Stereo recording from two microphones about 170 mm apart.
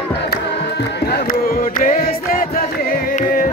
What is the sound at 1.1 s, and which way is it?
Music, 60° left (ahead or behind).